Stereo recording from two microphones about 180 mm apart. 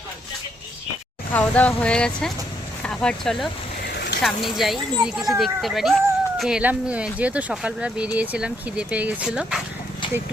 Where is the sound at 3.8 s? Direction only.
65° left (ahead or behind).